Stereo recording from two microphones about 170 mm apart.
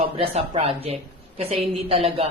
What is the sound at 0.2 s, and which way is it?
Speech, 35° right (ahead or behind).